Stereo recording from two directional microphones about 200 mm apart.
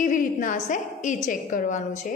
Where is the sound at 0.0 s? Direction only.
40° left (ahead or behind).